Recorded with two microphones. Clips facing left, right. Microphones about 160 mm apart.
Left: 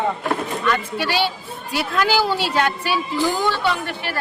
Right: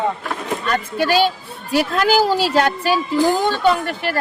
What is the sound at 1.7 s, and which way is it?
Speech, 40° right (ahead or behind).